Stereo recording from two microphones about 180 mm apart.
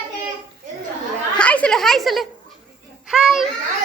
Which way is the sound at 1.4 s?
5° left (ahead or behind).